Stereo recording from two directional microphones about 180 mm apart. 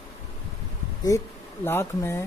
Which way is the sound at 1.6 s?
10° left (ahead or behind).